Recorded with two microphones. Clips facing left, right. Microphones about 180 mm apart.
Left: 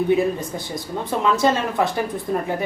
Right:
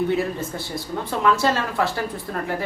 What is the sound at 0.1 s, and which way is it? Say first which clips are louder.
A woman's voice: left 4 dB; 15° left (ahead or behind).